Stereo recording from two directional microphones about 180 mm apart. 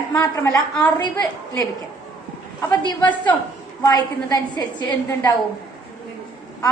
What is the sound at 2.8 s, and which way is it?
A woman's voice, 25° left (ahead or behind).